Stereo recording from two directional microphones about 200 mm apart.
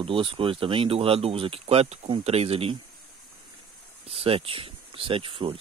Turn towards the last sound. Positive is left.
turn(degrees=-25)  # may be behind; listen again after turning